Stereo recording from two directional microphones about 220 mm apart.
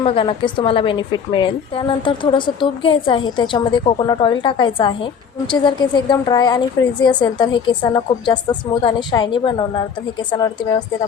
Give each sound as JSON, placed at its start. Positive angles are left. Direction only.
{"t": 0.0, "sound": "a woman's voice", "side_deg": 25}